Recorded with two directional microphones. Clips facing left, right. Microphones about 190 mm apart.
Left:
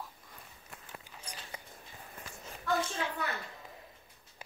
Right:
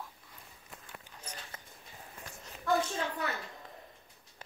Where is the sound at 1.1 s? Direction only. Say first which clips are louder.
Even; 10° left (ahead or behind).